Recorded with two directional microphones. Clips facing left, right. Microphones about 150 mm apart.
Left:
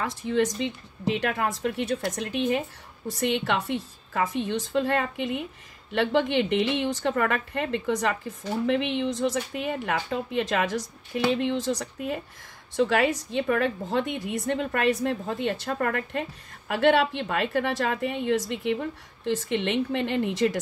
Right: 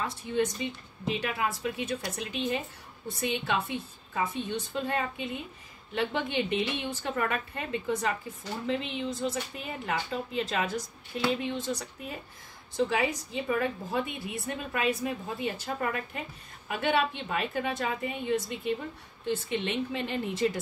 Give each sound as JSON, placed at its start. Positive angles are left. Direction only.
{"t": 0.0, "sound": "a woman's voice", "side_deg": 90}
{"t": 12.7, "sound": "a woman's voice", "side_deg": 85}
{"t": 14.4, "sound": "a woman's voice", "side_deg": 70}